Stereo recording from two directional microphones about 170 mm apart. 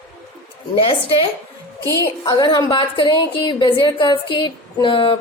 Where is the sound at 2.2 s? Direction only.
25° left (ahead or behind).